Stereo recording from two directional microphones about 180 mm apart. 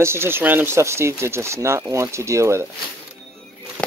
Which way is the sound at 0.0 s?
15° right (ahead or behind).